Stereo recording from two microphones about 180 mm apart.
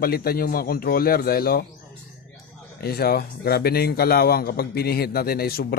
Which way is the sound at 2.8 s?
60° left (ahead or behind).